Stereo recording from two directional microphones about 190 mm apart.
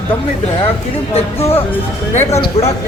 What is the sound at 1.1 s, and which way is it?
Speech, 30° left (ahead or behind).